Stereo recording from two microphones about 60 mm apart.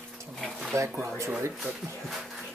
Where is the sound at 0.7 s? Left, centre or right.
Right.